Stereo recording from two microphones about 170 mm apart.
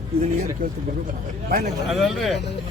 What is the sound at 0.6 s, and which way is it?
Speech, 60° right (ahead or behind).